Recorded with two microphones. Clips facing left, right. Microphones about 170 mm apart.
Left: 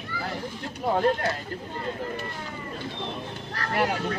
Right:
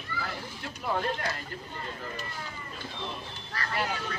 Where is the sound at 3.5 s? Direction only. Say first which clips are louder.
Left 6 dB; 60° left (ahead or behind).